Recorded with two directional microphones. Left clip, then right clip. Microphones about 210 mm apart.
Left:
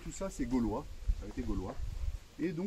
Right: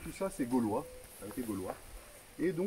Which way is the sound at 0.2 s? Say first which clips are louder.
Right 2 dB; 15° left (ahead or behind).